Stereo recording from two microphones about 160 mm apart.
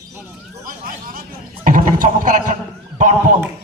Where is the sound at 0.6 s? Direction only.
60° right (ahead or behind).